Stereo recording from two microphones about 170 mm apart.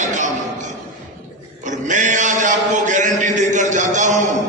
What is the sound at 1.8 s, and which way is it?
Mantra, 45° right (ahead or behind).